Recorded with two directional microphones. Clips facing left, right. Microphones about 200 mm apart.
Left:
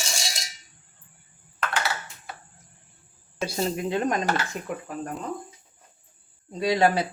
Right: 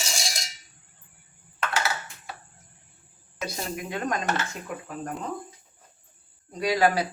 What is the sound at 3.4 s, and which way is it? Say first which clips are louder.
Speech: left 6 dB; 30° left (ahead or behind).